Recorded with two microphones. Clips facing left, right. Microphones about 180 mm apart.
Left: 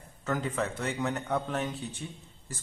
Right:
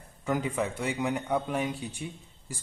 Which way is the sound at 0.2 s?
10° right (ahead or behind).